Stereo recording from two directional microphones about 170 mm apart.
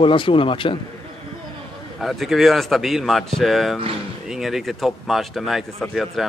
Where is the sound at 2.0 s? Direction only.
Centre (ahead or behind).